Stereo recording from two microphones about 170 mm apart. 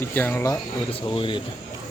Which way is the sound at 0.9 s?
30° left (ahead or behind).